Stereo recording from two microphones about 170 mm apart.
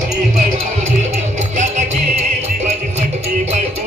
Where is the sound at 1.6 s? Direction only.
45° right (ahead or behind).